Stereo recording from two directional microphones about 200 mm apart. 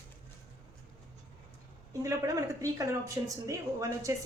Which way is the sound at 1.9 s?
15° right (ahead or behind).